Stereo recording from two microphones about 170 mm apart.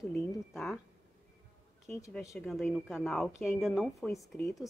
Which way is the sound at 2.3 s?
Centre (ahead or behind).